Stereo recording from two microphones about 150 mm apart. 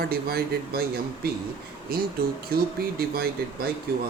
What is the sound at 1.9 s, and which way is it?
Speech, 85° right.